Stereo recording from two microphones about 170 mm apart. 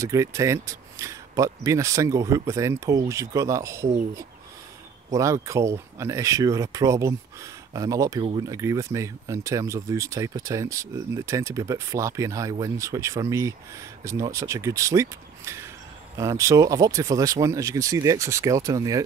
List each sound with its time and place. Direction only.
0.0 s speech: 20° right (ahead or behind)
5.1 s speech: 20° right (ahead or behind)